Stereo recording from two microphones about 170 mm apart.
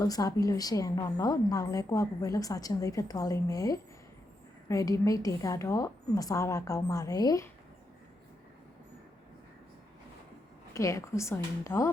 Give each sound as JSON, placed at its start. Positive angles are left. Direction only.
{"t": 0.0, "sound": "a woman's voice", "side_deg": 20}
{"t": 10.8, "sound": "a woman's voice", "side_deg": 20}